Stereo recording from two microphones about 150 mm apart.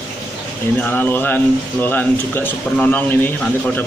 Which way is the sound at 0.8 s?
10° left (ahead or behind).